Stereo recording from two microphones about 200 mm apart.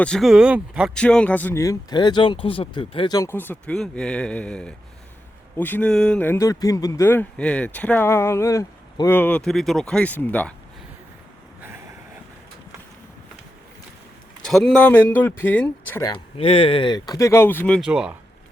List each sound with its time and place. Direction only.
0.0 s speech: centre (ahead or behind)
0.9 s speech: 5° left (ahead or behind)
14.4 s speech: centre (ahead or behind)
16.0 s speech: 25° left (ahead or behind); by 17.7 s 10° left (ahead or behind)
17.7 s speech: 5° right (ahead or behind)